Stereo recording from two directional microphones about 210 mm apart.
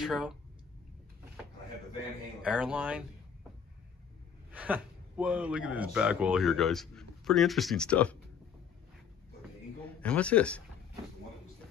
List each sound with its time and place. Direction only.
0.0 s speech: centre (ahead or behind)
2.4 s speech: 5° right (ahead or behind)
4.5 s speech: 5° right (ahead or behind)
9.8 s a man's voice: 5° left (ahead or behind)